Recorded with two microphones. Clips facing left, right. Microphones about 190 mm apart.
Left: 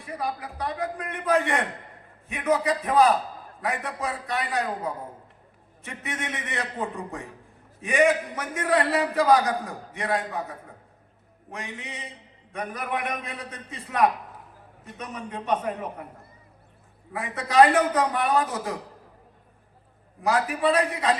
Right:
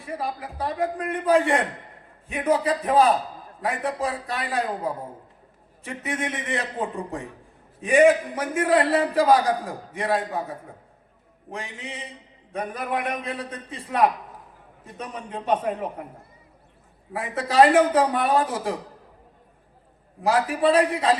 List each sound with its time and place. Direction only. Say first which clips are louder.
0.2 s a man's voice: left 1 dB; 30° right (ahead or behind)
7.8 s a man's voice: right 5 dB; 30° right (ahead or behind)
17.1 s a man's voice: right 3 dB; 30° right (ahead or behind)
20.2 s a man's voice: right 3 dB; 30° right (ahead or behind)